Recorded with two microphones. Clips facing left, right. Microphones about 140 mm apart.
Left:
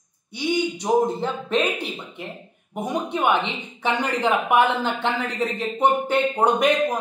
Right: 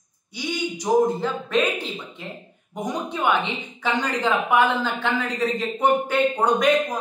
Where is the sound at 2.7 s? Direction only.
15° left (ahead or behind).